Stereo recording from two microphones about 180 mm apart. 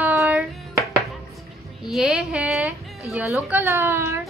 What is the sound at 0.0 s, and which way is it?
Hands, 5° right (ahead or behind).